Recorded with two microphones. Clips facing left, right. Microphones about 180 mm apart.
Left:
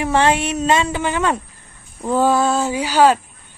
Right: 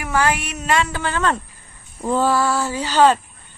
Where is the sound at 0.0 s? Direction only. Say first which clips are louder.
Left 4 dB; 25° left (ahead or behind).